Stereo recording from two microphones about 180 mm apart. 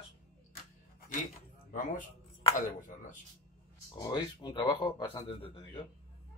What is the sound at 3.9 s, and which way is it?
Speech, 20° left (ahead or behind).